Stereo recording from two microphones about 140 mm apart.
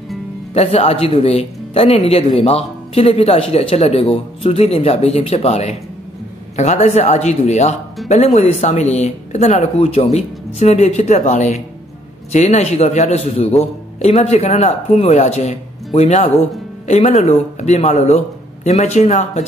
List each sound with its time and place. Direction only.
0.6 s speech: 45° left (ahead or behind)